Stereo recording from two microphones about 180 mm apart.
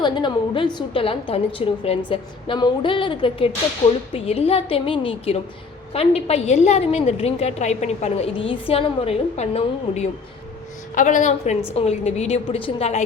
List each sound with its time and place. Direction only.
0.0 s a woman's voice: 25° left (ahead or behind)